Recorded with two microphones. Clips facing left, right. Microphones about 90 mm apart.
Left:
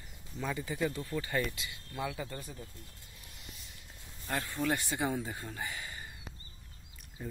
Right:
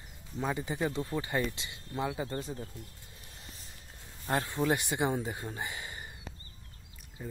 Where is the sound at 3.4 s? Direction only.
35° right (ahead or behind).